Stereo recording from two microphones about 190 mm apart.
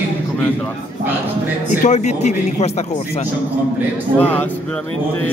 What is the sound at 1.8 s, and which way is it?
Speech, 35° left (ahead or behind).